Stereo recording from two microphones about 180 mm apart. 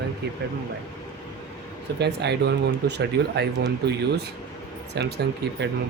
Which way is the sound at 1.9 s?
65° right (ahead or behind).